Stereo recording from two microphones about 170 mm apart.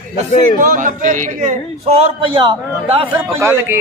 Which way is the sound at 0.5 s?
50° right (ahead or behind).